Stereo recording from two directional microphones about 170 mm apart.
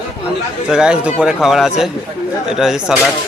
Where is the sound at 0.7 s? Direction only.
5° right (ahead or behind).